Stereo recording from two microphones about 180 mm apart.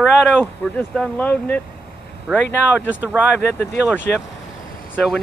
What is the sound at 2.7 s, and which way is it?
Speech, 10° right (ahead or behind).